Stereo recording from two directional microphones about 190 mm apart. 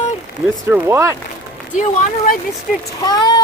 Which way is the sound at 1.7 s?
40° left (ahead or behind).